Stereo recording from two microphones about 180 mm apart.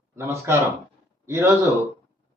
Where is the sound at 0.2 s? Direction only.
15° right (ahead or behind).